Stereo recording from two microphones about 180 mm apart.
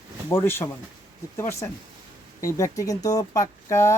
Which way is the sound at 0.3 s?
15° left (ahead or behind).